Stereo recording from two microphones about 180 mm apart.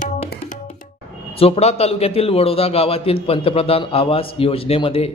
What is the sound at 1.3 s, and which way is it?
A man's voice, 35° left (ahead or behind).